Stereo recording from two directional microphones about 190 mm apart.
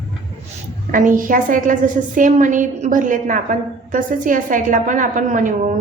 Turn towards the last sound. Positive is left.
turn(degrees=-40)  # may be behind; listen again after turning